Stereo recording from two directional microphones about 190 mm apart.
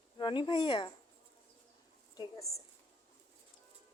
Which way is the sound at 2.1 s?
15° left (ahead or behind).